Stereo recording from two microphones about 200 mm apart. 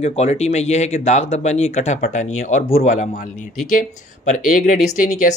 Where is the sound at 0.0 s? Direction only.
35° left (ahead or behind).